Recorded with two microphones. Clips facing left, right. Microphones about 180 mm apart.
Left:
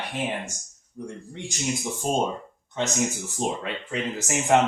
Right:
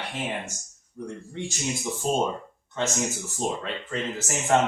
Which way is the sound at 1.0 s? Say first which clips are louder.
Right 2 dB; 20° left (ahead or behind).